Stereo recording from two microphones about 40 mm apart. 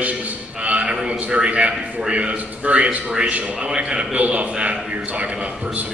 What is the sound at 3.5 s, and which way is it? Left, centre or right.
A man's voice, right.